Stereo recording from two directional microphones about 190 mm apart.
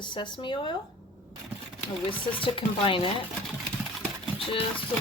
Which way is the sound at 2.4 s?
25° left (ahead or behind).